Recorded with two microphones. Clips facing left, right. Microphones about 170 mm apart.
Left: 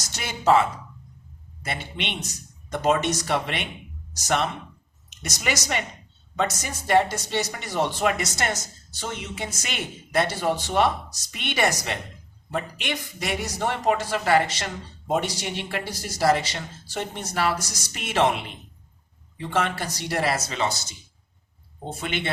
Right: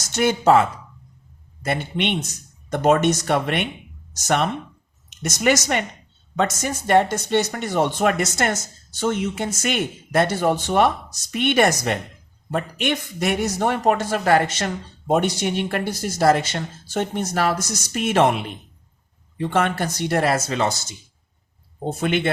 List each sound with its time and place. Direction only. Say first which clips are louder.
0.2 s speech: right 5 dB; 50° right (ahead or behind)
1.6 s speech: right 8 dB; 50° right (ahead or behind)
5.3 s speech: right 8 dB; 50° right (ahead or behind)
22.0 s speech: right 8 dB; 50° right (ahead or behind)